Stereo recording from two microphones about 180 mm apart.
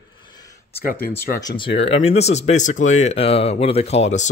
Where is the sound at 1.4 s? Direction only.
25° left (ahead or behind).